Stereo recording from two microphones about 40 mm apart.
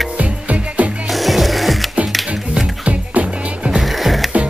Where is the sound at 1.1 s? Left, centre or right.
Centre.